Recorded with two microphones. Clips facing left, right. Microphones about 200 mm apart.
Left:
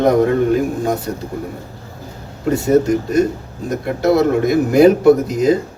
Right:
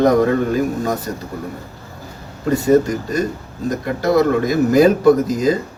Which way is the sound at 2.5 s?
25° left (ahead or behind).